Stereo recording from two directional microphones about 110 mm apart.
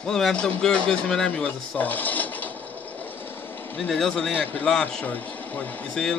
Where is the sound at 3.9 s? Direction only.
5° left (ahead or behind).